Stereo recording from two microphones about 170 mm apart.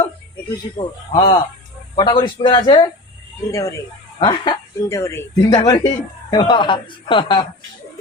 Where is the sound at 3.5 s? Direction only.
20° left (ahead or behind).